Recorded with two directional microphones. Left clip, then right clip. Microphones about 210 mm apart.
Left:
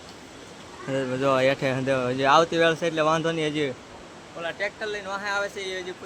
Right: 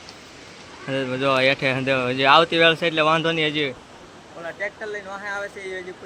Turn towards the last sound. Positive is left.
turn(degrees=5)  # may be behind; listen again after turning